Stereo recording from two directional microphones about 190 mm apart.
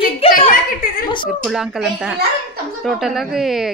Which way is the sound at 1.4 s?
Centre (ahead or behind).